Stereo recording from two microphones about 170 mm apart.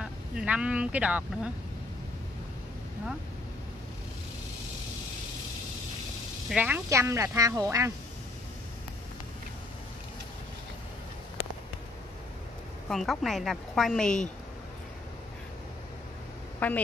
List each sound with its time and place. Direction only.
0.0 s speech: 5° right (ahead or behind)
6.5 s speech: 10° right (ahead or behind)
12.8 s a woman's voice: centre (ahead or behind)
16.5 s a woman's voice: 10° left (ahead or behind)